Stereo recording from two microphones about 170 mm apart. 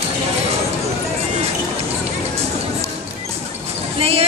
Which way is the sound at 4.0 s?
35° right (ahead or behind).